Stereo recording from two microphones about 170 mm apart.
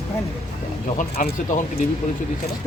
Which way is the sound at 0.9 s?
50° left (ahead or behind).